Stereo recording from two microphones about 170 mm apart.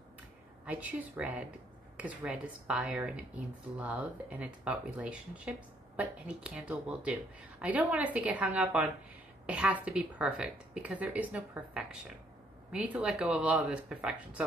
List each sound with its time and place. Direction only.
0.7 s speech: 10° right (ahead or behind)